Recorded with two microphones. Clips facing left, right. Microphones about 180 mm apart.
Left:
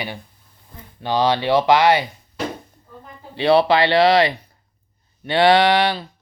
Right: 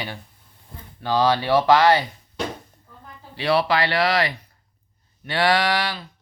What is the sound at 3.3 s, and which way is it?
Speech, 25° left (ahead or behind).